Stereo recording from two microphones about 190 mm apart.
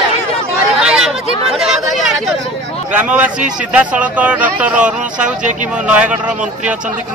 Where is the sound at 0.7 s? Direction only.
5° right (ahead or behind).